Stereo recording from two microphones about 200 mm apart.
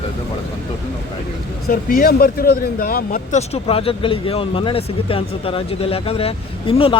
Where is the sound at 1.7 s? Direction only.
50° left (ahead or behind).